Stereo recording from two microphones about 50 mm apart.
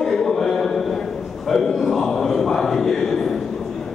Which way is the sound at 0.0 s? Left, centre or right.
Centre.